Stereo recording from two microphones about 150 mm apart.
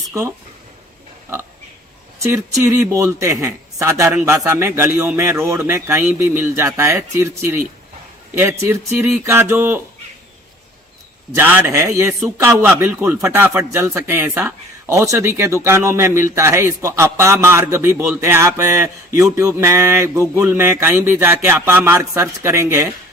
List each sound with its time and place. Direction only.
0.1 s speech: 20° right (ahead or behind)
2.1 s mantra: 20° right (ahead or behind)
11.3 s mantra: 15° right (ahead or behind)